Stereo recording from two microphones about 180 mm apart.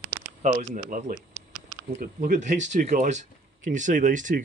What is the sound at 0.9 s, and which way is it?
Speech, 50° right (ahead or behind).